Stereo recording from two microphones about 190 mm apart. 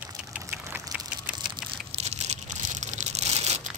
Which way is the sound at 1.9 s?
35° right (ahead or behind).